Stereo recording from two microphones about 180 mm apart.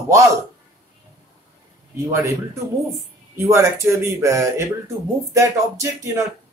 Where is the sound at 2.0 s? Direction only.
15° right (ahead or behind).